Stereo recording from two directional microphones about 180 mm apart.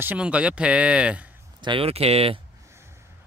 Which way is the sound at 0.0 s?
10° right (ahead or behind).